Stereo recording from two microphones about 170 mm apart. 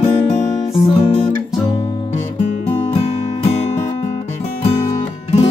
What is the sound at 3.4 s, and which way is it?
Music, 40° left (ahead or behind).